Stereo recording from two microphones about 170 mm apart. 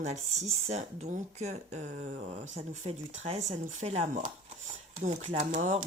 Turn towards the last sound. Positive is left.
turn(degrees=-40)  # may be behind; listen again after turning